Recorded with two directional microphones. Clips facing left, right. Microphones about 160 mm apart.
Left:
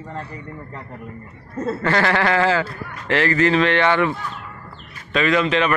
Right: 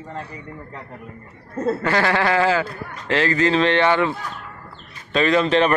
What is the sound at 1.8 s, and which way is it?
A man's voice, 15° right (ahead or behind).